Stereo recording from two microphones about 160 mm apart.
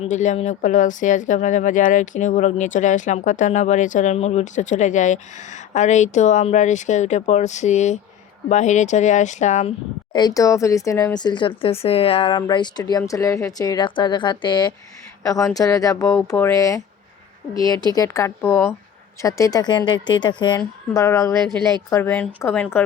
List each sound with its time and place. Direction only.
0.0 s speech: 50° left (ahead or behind)
10.1 s a woman's voice: 25° left (ahead or behind)